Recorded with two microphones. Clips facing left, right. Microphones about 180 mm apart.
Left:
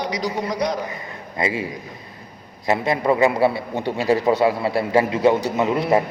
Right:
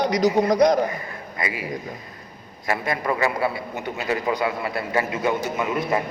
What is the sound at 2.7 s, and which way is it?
A man's voice, 25° left (ahead or behind).